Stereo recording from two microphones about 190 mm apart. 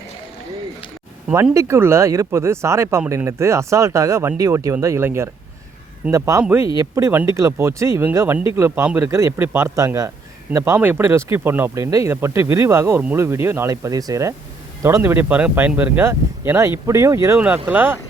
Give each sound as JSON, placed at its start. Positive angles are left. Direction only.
{"t": 1.5, "sound": "speech", "side_deg": -15}